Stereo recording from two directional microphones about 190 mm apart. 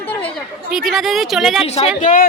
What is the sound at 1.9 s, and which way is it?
Speech, 45° left (ahead or behind).